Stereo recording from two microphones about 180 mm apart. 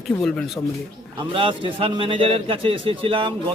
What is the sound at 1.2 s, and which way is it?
Speech, 30° right (ahead or behind).